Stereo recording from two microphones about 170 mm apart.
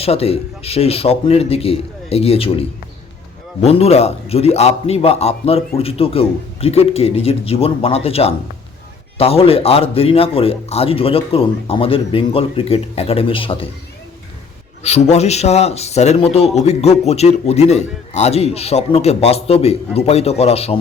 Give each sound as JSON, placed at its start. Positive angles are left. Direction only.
{"t": 0.0, "sound": "a man's voice", "side_deg": 35}
{"t": 14.8, "sound": "a man's voice", "side_deg": 40}